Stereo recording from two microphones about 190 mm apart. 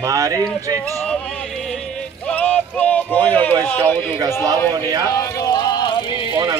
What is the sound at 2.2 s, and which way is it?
Music, 10° left (ahead or behind).